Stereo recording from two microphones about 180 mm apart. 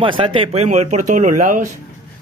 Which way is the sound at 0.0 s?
30° right (ahead or behind).